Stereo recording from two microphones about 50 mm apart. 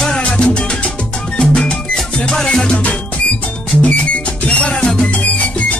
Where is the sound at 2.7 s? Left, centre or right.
Left.